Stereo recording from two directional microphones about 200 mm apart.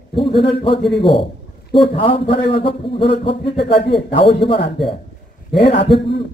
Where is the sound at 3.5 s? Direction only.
60° left (ahead or behind).